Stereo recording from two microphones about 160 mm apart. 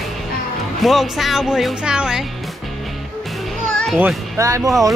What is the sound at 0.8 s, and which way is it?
Speech, centre (ahead or behind).